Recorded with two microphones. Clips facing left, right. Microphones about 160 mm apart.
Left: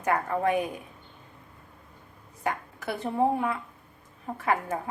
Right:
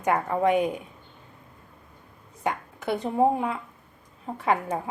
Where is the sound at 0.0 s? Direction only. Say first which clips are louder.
Right 3 dB; 20° right (ahead or behind).